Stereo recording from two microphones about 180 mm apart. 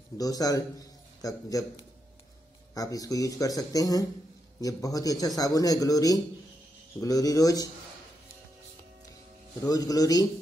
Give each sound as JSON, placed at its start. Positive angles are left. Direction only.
{"t": 0.2, "sound": "a man's voice", "side_deg": 20}
{"t": 2.7, "sound": "speech", "side_deg": 20}
{"t": 9.7, "sound": "speech", "side_deg": 20}